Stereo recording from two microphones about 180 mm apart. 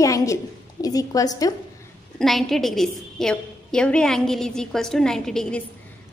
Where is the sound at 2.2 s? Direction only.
Centre (ahead or behind).